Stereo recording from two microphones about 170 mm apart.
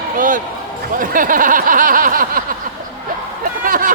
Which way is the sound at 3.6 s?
55° right (ahead or behind).